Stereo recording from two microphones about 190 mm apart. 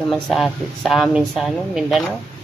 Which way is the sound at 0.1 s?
Centre (ahead or behind).